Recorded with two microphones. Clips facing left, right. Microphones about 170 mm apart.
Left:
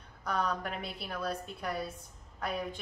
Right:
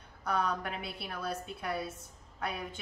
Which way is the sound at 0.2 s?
Centre (ahead or behind).